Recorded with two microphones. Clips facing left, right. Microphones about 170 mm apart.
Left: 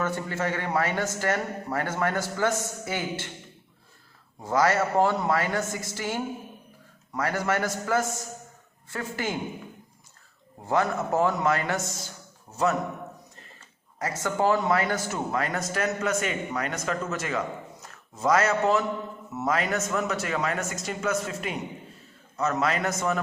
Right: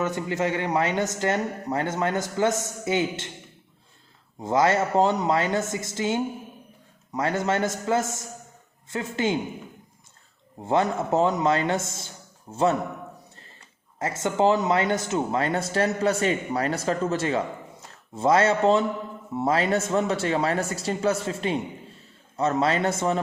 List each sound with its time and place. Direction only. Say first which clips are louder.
0.0 s speech: right 3 dB; 15° right (ahead or behind)
4.4 s speech: right 2 dB; 20° right (ahead or behind)
10.7 s speech: right 2 dB; 25° right (ahead or behind)
14.0 s speech: right 3 dB; 25° right (ahead or behind)